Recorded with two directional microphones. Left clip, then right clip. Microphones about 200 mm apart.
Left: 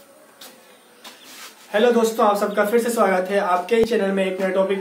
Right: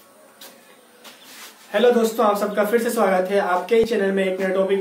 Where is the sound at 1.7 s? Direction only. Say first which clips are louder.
Even; centre (ahead or behind).